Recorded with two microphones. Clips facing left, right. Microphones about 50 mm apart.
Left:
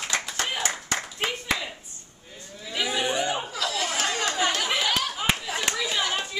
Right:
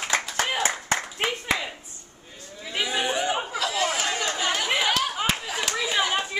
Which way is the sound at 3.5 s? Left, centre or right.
Centre.